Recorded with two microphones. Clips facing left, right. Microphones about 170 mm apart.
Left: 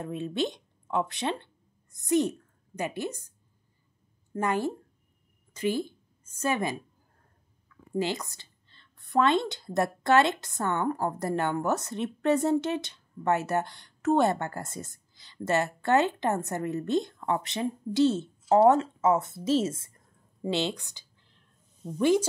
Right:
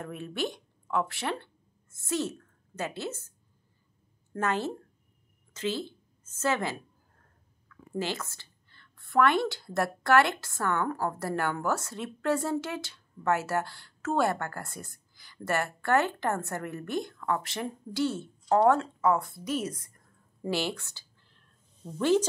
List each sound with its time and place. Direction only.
0.0 s a woman's voice: 20° left (ahead or behind)
7.9 s a woman's voice: 15° left (ahead or behind)